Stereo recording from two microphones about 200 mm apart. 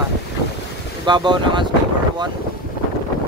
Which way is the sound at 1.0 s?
20° right (ahead or behind).